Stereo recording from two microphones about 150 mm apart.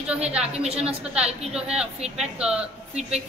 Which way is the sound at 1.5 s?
5° right (ahead or behind).